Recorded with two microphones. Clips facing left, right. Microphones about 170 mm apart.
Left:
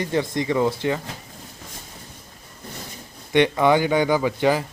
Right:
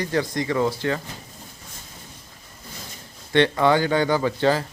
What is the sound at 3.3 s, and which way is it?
Speech, 15° left (ahead or behind).